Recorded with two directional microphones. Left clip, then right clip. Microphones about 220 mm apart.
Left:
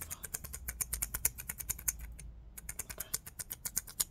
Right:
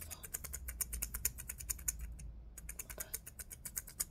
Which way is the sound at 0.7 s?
15° left (ahead or behind).